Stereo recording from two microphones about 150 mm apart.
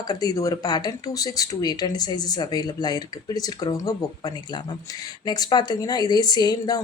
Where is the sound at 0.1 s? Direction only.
25° left (ahead or behind).